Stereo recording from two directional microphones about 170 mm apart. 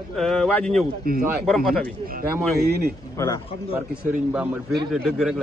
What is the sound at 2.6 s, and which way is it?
Speech, 65° right (ahead or behind).